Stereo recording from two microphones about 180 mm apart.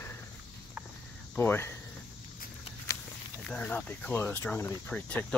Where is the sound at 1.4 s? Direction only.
10° left (ahead or behind).